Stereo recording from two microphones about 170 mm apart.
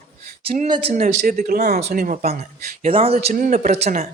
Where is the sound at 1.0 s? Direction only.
55° right (ahead or behind).